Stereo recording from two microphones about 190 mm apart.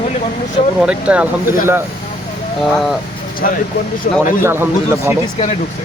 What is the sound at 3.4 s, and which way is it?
Speech, 45° left (ahead or behind).